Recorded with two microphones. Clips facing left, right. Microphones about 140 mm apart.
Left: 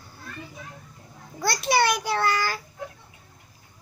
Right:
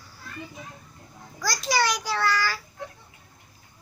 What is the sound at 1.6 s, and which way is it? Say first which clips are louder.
Child singing: left 3 dB; 55° left (ahead or behind).